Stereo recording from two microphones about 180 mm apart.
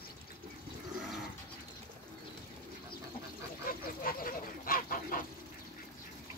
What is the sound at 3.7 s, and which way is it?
Duck, 55° left (ahead or behind).